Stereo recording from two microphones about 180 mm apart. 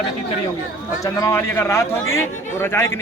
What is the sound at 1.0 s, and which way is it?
Speech, 15° left (ahead or behind).